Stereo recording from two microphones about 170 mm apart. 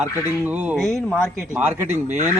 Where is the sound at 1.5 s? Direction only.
10° right (ahead or behind).